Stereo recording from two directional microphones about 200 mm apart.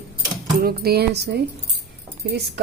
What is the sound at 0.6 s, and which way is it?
Speech, 50° right (ahead or behind).